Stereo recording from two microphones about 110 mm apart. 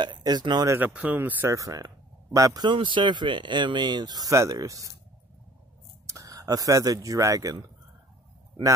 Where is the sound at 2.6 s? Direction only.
50° right (ahead or behind); by 4.9 s 30° right (ahead or behind).